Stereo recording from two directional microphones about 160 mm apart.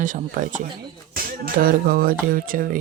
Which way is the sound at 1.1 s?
65° right (ahead or behind).